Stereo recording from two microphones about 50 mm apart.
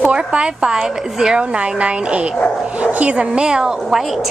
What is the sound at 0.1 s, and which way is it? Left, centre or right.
Speech, right.